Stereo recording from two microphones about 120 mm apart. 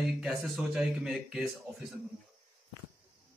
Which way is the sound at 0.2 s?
Centre (ahead or behind).